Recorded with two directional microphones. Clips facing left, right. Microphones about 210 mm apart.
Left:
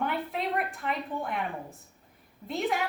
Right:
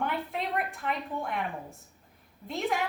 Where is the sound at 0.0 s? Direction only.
Centre (ahead or behind).